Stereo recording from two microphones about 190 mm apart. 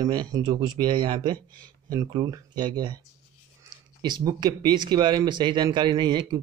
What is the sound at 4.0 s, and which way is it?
Speech, 20° right (ahead or behind).